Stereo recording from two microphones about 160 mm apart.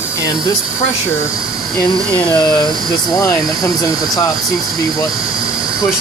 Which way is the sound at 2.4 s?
30° left (ahead or behind).